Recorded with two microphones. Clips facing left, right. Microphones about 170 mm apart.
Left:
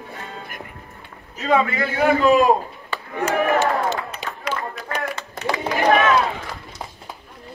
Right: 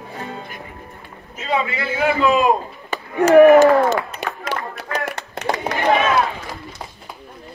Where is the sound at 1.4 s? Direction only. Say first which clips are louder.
Left 3 dB; 50° left (ahead or behind).